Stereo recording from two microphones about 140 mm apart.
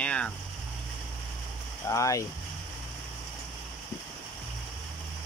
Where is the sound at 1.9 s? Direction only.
25° left (ahead or behind).